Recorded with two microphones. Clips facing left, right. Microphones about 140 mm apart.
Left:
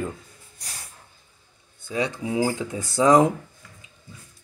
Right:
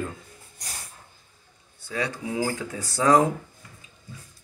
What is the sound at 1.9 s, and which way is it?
Speech, 20° left (ahead or behind).